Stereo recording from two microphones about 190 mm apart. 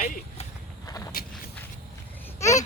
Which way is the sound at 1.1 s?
50° left (ahead or behind).